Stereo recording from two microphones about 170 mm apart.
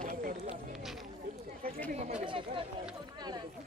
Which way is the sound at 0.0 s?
50° right (ahead or behind).